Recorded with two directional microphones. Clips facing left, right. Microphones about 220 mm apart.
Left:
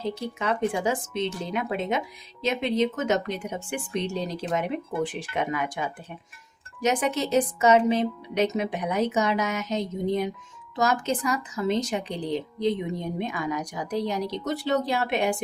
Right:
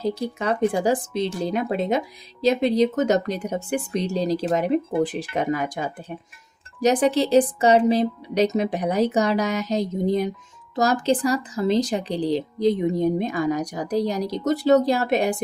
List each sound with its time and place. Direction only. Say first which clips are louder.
0.0 s speech: right 4 dB; 40° right (ahead or behind)